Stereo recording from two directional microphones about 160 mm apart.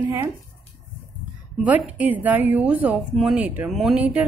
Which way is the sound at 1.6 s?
10° right (ahead or behind).